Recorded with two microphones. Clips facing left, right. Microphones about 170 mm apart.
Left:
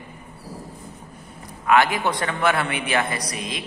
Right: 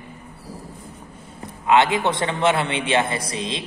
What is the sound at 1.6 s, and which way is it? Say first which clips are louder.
A man's voice: right 1 dB; 25° right (ahead or behind).